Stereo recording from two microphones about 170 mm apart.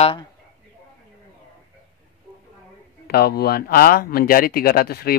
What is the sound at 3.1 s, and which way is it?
Speech, 65° left (ahead or behind).